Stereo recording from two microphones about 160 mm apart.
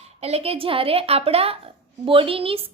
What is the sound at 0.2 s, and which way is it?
A woman's voice, 40° right (ahead or behind).